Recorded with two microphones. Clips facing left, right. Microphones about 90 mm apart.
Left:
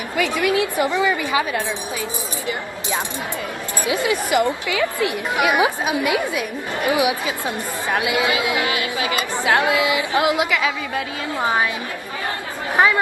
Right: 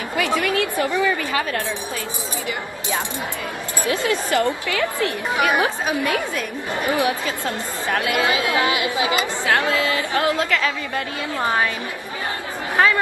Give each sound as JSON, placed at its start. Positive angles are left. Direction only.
{"t": 0.2, "sound": "a woman's voice", "side_deg": 15}
{"t": 3.8, "sound": "a woman's voice", "side_deg": 15}
{"t": 8.5, "sound": "speech", "side_deg": -20}
{"t": 9.4, "sound": "a woman's voice", "side_deg": 15}
{"t": 12.7, "sound": "speech", "side_deg": 20}